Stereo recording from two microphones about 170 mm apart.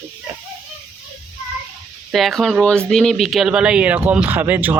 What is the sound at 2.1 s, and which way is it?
Speech, centre (ahead or behind).